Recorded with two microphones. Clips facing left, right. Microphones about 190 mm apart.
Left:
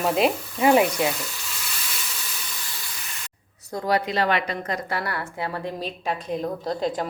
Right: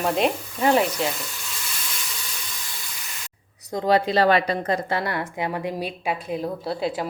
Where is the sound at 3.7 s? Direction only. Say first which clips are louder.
Right 4 dB; 25° right (ahead or behind); by 7.0 s 5° right (ahead or behind).